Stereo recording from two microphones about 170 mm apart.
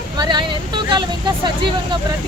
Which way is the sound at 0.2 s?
25° right (ahead or behind).